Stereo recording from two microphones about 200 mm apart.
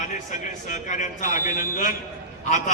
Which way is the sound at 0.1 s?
40° left (ahead or behind).